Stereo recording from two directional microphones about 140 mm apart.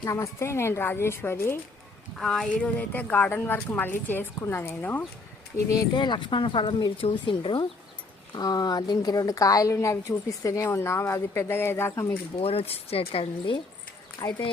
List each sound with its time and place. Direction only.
0.0 s speech: 20° left (ahead or behind)
2.1 s speech: centre (ahead or behind)
5.5 s a woman's voice: 25° left (ahead or behind)
12.4 s speech: 45° left (ahead or behind)
14.2 s a woman's voice: 25° left (ahead or behind)